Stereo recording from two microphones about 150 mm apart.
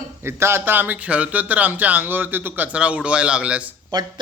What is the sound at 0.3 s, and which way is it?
A man's voice, 15° right (ahead or behind).